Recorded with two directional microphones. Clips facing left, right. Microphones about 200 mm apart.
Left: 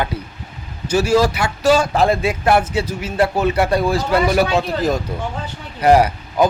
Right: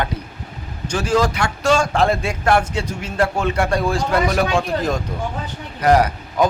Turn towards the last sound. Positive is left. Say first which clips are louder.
# left 2 dB
turn(degrees=10)  # may be behind; listen again after turning